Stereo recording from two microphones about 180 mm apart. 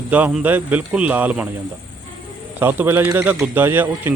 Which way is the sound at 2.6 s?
10° right (ahead or behind).